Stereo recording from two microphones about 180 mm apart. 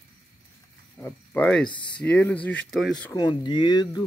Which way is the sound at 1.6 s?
25° left (ahead or behind).